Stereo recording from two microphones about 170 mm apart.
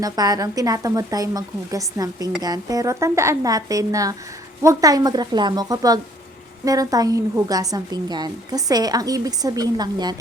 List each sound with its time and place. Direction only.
0.0 s a woman's voice: 20° right (ahead or behind)